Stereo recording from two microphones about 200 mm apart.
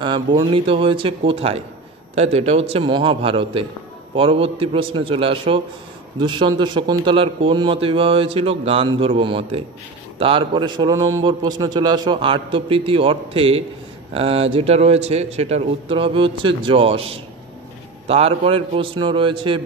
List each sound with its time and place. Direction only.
0.0 s a man's voice: 25° right (ahead or behind)